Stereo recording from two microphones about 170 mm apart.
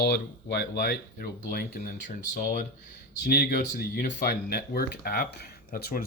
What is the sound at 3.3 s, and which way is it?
Speech, 70° left (ahead or behind).